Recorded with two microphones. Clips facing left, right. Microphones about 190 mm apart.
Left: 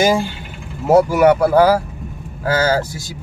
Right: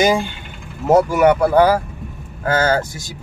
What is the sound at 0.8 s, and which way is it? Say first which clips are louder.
Speech: left 1 dB; 10° left (ahead or behind).